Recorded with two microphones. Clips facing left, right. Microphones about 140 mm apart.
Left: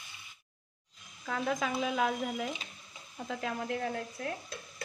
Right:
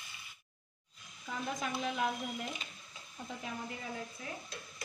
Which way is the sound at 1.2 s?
90° left.